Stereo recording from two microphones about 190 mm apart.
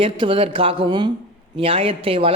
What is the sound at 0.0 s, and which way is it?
A man's voice, 30° right (ahead or behind).